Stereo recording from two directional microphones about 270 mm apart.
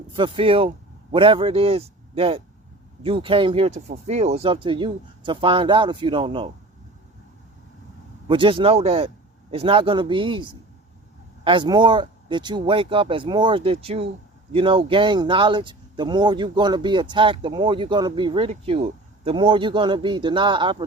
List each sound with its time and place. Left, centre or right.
0.1 s a man's voice: centre
8.3 s speech: centre